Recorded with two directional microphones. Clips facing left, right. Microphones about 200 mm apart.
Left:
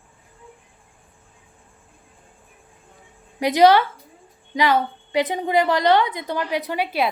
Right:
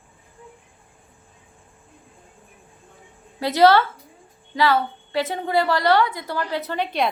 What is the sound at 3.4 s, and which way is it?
A woman's voice, 15° left (ahead or behind).